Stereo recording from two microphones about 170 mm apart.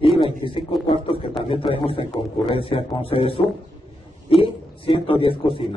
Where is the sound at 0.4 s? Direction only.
30° left (ahead or behind).